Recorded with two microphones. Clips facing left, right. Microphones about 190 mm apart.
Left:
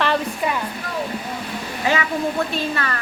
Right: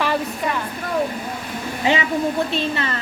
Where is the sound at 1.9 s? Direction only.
20° right (ahead or behind).